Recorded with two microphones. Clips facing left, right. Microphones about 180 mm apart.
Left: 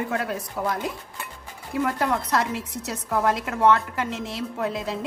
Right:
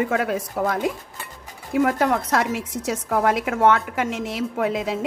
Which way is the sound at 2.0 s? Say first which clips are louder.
Right 3 dB; 50° right (ahead or behind).